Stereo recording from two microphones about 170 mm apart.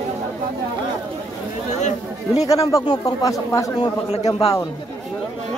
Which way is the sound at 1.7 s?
45° left (ahead or behind).